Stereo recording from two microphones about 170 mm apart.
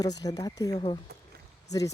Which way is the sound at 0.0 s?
20° left (ahead or behind).